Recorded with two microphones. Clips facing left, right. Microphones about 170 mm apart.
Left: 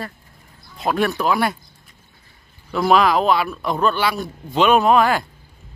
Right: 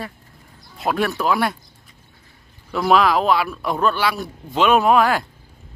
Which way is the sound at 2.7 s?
Centre (ahead or behind).